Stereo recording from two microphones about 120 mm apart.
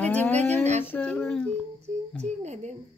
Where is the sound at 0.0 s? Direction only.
15° left (ahead or behind).